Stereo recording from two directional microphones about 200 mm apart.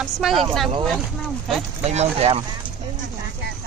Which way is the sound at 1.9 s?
30° right (ahead or behind).